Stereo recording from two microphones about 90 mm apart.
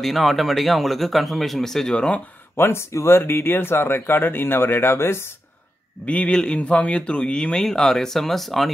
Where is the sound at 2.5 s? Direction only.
25° left (ahead or behind).